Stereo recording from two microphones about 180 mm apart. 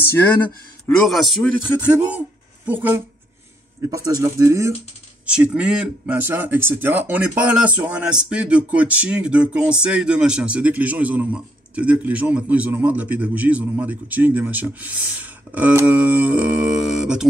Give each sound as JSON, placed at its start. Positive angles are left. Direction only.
{"t": 0.8, "sound": "a man's voice", "side_deg": 0}